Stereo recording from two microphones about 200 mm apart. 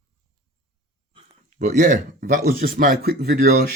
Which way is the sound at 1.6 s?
40° right (ahead or behind).